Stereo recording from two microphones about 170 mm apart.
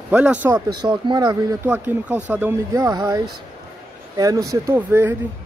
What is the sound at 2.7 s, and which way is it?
Speech, 20° right (ahead or behind).